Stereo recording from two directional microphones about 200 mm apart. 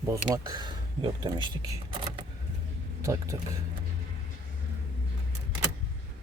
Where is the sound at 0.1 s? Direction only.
20° right (ahead or behind).